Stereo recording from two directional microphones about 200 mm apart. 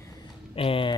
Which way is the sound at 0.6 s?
25° left (ahead or behind).